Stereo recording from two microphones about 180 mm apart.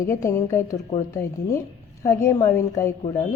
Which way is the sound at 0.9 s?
35° left (ahead or behind).